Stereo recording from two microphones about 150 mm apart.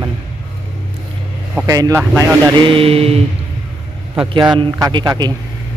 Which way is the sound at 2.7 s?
40° right (ahead or behind).